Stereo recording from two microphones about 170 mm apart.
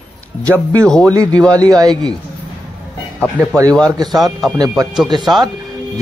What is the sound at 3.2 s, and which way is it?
Speech, 5° left (ahead or behind).